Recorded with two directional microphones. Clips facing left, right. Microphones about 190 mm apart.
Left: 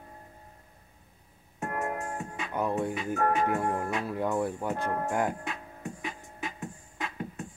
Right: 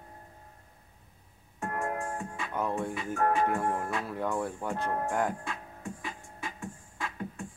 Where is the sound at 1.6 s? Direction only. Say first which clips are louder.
Left 1 dB; 20° left (ahead or behind).